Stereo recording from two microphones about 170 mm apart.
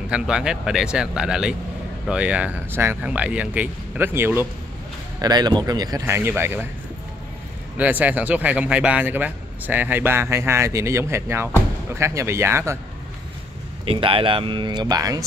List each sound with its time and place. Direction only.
0.1 s speech: 5° right (ahead or behind)
5.2 s speech: 25° right (ahead or behind)
7.7 s speech: 10° right (ahead or behind)
13.8 s speech: 30° right (ahead or behind)